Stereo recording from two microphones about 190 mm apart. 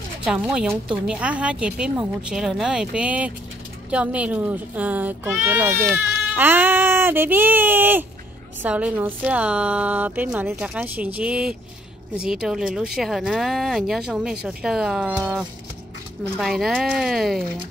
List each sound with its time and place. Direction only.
0.2 s a woman's voice: 5° right (ahead or behind)